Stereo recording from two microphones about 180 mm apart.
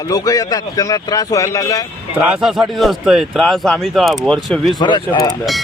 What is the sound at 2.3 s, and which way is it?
A man's voice, centre (ahead or behind).